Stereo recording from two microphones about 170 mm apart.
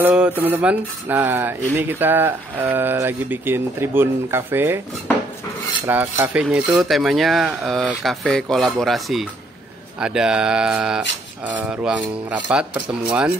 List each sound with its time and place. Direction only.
0.0 s speech: 5° right (ahead or behind)
5.9 s speech: 10° right (ahead or behind)